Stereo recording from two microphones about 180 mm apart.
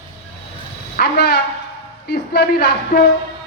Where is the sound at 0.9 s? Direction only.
60° left (ahead or behind).